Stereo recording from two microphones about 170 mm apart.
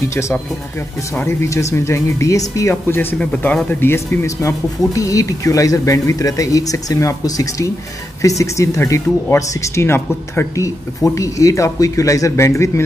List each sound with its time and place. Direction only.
0.1 s speech: 15° left (ahead or behind)